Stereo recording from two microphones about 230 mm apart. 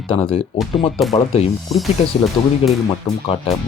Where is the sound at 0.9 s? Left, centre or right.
Centre.